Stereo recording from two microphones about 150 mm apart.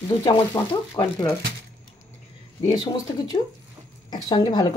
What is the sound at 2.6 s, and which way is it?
Speech, 25° left (ahead or behind).